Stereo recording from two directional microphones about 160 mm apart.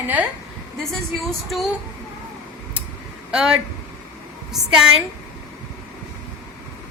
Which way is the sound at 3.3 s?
5° right (ahead or behind).